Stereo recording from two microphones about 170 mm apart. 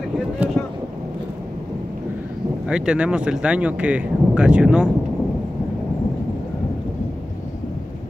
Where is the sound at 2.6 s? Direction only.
5° right (ahead or behind).